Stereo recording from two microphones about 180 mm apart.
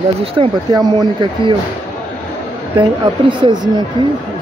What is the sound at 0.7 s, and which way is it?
Speech, 20° right (ahead or behind).